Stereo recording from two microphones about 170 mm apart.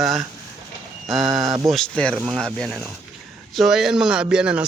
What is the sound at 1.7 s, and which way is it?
A man's voice, 5° left (ahead or behind).